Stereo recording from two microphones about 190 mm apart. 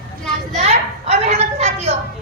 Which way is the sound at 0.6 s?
35° right (ahead or behind).